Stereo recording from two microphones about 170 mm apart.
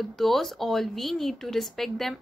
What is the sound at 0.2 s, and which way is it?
Speech, centre (ahead or behind).